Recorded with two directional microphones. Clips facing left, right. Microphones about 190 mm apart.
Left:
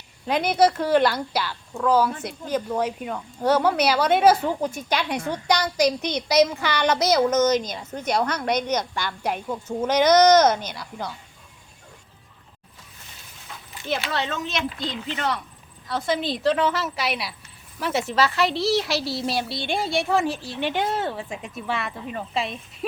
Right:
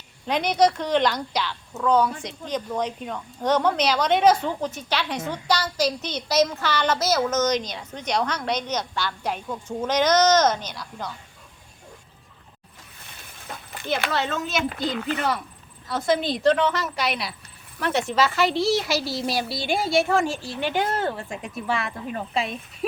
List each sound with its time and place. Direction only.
0.3 s speech: 5° left (ahead or behind)
13.5 s a sound: 50° right (ahead or behind)
14.1 s speech: centre (ahead or behind)
14.9 s speech: 60° right (ahead or behind)
15.9 s speech: centre (ahead or behind)